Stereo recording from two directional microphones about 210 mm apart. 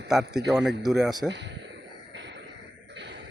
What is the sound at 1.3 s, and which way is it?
Speech, 55° right (ahead or behind).